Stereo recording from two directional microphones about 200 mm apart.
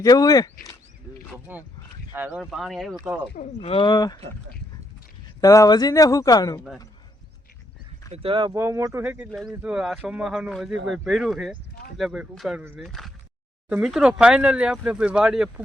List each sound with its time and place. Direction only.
0.0 s speech: 15° left (ahead or behind)
1.5 s speech: 10° right (ahead or behind)
2.4 s speech: centre (ahead or behind)
3.3 s speech: 35° left (ahead or behind)
5.4 s speech: 15° left (ahead or behind)
8.1 s speech: 25° right (ahead or behind)
8.5 s speech: 15° right (ahead or behind)